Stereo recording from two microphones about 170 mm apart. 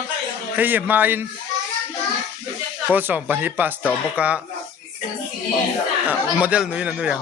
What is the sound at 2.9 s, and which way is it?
Speech, 10° right (ahead or behind).